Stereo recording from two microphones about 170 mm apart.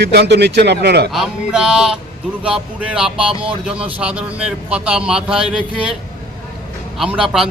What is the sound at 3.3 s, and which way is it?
Speech, 30° right (ahead or behind).